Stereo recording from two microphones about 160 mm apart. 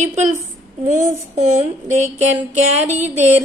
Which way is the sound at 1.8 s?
50° right (ahead or behind).